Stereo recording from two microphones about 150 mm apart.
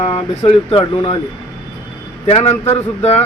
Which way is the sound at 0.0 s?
40° left (ahead or behind).